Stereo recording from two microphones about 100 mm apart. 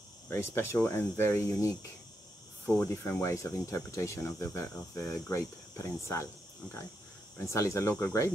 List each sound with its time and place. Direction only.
0.3 s speech: 25° left (ahead or behind)
7.3 s speech: 30° left (ahead or behind)